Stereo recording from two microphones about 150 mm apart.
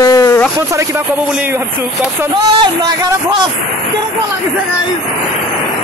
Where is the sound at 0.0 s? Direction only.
20° left (ahead or behind).